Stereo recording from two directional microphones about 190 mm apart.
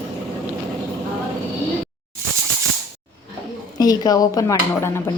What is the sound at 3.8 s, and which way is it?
Speech, 20° left (ahead or behind).